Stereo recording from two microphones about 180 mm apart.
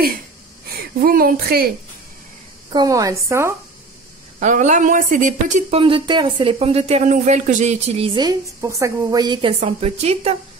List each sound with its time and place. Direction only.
1.0 s a woman's voice: 55° right (ahead or behind)
2.7 s a woman's voice: 20° right (ahead or behind)
4.4 s speech: 45° right (ahead or behind)